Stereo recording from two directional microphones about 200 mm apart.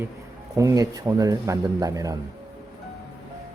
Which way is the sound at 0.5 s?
15° right (ahead or behind).